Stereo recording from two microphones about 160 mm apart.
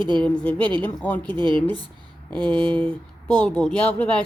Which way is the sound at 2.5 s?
5° left (ahead or behind).